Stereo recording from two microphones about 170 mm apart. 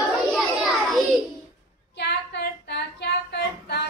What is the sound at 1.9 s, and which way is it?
Female singing, 80° left.